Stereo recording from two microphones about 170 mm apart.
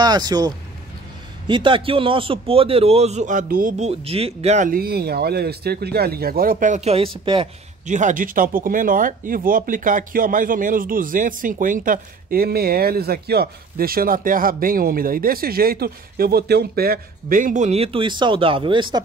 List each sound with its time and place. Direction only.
0.0 s speech: 25° right (ahead or behind)
1.5 s a man's voice: 30° right (ahead or behind)
7.8 s speech: 45° right (ahead or behind); by 19.0 s 30° right (ahead or behind)